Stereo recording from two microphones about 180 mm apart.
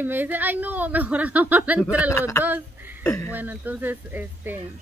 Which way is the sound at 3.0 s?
15° left (ahead or behind).